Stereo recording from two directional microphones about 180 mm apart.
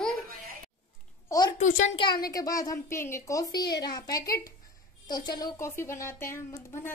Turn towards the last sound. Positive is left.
turn(degrees=15)  # may be behind; listen again after turning